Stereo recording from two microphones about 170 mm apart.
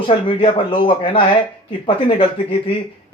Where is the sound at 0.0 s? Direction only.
30° left (ahead or behind).